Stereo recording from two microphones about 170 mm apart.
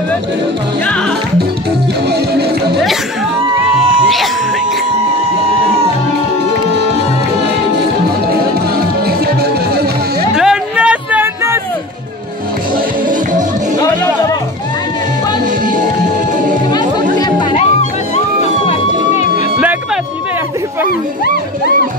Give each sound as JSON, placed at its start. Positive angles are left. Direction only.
{"t": 2.0, "sound": "music", "side_deg": -75}
{"t": 8.7, "sound": "music", "side_deg": -65}
{"t": 10.3, "sound": "a sound", "side_deg": -5}
{"t": 17.2, "sound": "music", "side_deg": 25}